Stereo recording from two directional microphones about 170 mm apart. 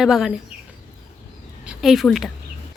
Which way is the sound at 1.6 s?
5° right (ahead or behind).